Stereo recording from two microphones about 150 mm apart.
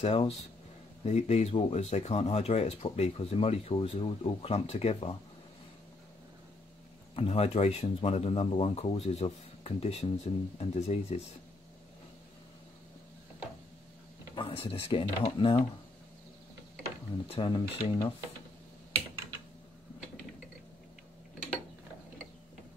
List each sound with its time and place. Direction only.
0.0 s speech: 40° left (ahead or behind)
7.2 s speech: 40° left (ahead or behind)
14.3 s speech: 35° left (ahead or behind)
17.3 s speech: 35° left (ahead or behind)